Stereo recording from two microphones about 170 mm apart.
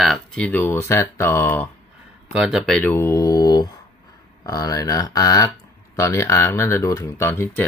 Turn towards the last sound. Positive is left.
turn(degrees=15)  # may be behind; listen again after turning